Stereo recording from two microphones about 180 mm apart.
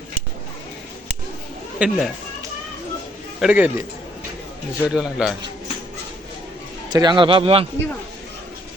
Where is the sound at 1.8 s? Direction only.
5° right (ahead or behind).